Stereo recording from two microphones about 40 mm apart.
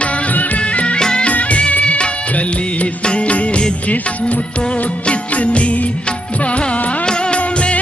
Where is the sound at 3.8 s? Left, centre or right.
Left.